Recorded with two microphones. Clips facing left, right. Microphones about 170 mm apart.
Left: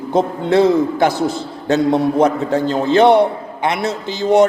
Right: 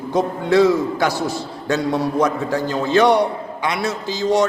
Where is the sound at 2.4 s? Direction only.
20° left (ahead or behind).